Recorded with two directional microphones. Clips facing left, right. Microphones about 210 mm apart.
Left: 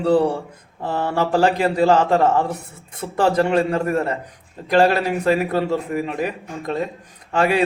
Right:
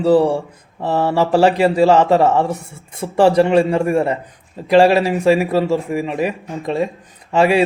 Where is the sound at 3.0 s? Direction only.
35° right (ahead or behind).